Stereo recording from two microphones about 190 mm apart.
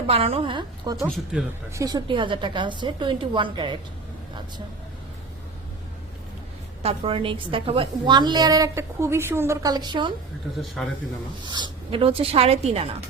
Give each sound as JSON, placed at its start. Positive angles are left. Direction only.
{"t": 0.1, "sound": "a woman's voice", "side_deg": -30}
{"t": 1.1, "sound": "speech", "side_deg": 0}
{"t": 1.7, "sound": "a woman's voice", "side_deg": -20}
{"t": 6.8, "sound": "a woman's voice", "side_deg": -30}
{"t": 10.8, "sound": "speech", "side_deg": 0}
{"t": 11.4, "sound": "a woman's voice", "side_deg": -25}